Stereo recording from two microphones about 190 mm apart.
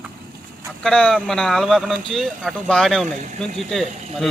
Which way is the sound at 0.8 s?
5° left (ahead or behind).